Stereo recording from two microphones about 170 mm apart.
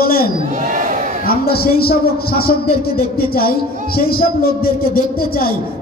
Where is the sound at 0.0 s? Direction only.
60° left (ahead or behind).